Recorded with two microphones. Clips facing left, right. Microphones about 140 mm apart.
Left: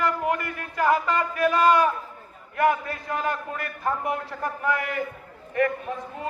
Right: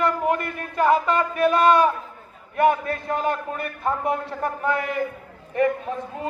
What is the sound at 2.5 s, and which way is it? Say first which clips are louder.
A man's voice: right 3 dB; 25° right (ahead or behind).